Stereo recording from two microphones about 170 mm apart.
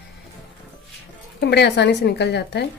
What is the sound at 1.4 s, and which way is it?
Speech, 80° left.